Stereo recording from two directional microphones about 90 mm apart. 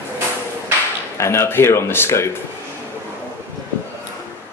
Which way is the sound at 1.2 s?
30° left (ahead or behind).